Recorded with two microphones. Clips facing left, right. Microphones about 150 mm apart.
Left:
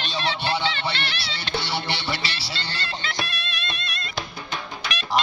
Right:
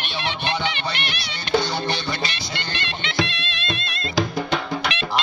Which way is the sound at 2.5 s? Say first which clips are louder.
Right 2 dB; 15° right (ahead or behind).